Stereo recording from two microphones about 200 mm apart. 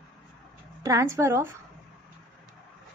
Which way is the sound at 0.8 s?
15° right (ahead or behind).